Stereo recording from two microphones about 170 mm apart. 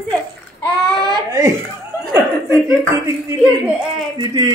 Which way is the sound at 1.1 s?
20° right (ahead or behind).